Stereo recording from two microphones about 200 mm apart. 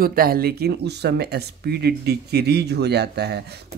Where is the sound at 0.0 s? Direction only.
45° right (ahead or behind).